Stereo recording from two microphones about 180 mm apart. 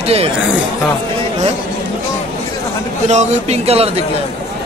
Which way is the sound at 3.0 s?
40° right (ahead or behind).